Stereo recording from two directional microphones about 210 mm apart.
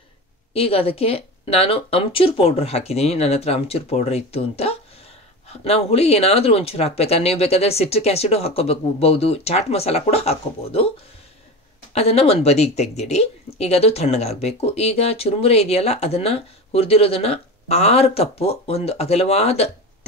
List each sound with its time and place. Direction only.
0.5 s speech: 30° left (ahead or behind)
11.9 s speech: 30° left (ahead or behind)